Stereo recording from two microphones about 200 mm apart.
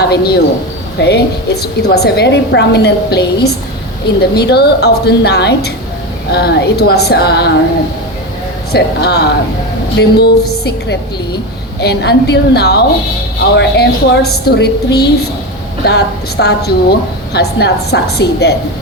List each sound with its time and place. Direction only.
0.0 s a man's voice: 55° left (ahead or behind)
8.7 s a woman's voice: 55° left (ahead or behind)